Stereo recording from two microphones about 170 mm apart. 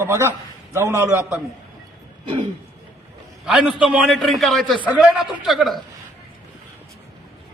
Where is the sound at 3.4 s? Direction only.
5° right (ahead or behind).